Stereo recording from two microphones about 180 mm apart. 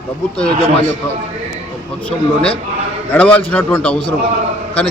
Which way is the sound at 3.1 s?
10° left (ahead or behind).